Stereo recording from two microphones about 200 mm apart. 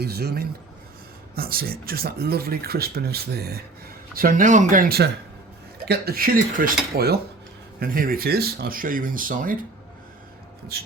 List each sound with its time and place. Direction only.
0.0 s speech: 50° right (ahead or behind)